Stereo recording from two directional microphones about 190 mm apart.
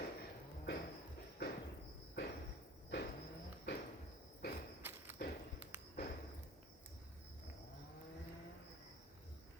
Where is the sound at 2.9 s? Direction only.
70° left (ahead or behind).